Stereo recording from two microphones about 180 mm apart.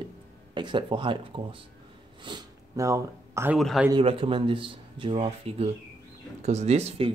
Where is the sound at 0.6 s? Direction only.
25° right (ahead or behind).